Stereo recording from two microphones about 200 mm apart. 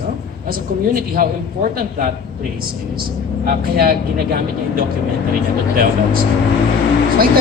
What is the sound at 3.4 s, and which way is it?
Speech, 45° right (ahead or behind).